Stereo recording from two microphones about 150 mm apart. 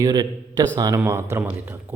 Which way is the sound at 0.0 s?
25° right (ahead or behind).